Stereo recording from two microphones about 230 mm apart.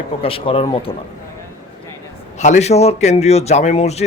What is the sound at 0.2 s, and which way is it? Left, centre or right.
Speech, left.